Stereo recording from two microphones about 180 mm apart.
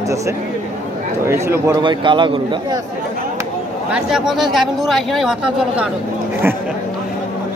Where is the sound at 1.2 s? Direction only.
15° right (ahead or behind).